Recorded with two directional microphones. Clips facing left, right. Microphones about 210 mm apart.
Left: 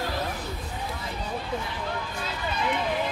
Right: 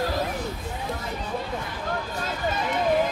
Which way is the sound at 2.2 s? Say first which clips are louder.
Right 1 dB; 45° right (ahead or behind).